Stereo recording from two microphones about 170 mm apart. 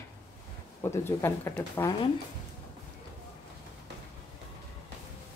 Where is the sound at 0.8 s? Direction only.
15° left (ahead or behind).